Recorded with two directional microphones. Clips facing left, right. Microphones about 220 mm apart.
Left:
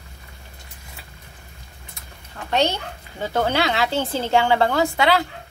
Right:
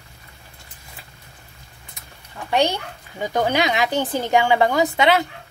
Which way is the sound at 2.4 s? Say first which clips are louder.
Right 1 dB; 15° right (ahead or behind).